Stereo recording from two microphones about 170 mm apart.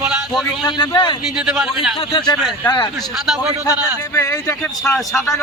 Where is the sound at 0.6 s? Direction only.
25° left (ahead or behind).